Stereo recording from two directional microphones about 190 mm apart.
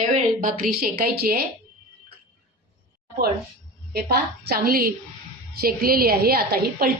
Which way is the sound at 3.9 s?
55° right (ahead or behind).